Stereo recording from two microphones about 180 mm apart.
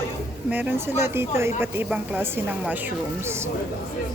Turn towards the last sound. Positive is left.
turn(degrees=-15)  # may be behind; listen again after turning